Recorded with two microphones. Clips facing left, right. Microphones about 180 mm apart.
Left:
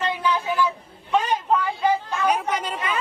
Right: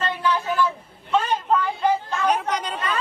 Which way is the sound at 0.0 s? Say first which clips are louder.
Even; 15° left (ahead or behind).